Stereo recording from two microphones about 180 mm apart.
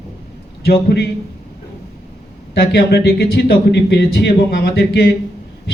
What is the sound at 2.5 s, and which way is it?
Speech, 60° left (ahead or behind).